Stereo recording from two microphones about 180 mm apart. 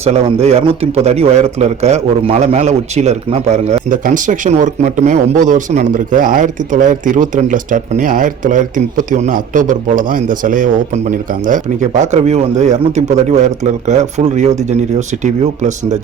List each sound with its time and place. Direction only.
0.0 s speech: 35° right (ahead or behind)